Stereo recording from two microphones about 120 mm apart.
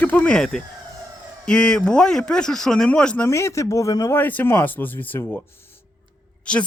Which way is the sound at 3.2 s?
25° left (ahead or behind).